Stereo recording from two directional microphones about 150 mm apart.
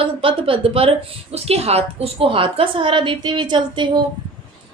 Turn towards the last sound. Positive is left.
turn(degrees=-30)  # may be behind; listen again after turning